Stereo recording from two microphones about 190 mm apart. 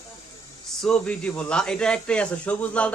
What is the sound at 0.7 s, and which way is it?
A man's voice, 5° left (ahead or behind).